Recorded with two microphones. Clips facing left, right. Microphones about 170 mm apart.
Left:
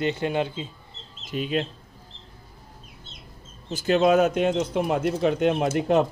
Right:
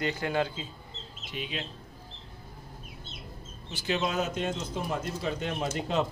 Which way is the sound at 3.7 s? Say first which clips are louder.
Left 11 dB; 50° left (ahead or behind).